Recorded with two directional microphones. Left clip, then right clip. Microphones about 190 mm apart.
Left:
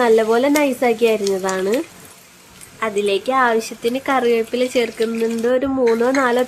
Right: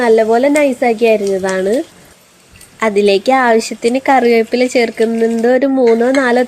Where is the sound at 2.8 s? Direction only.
30° right (ahead or behind).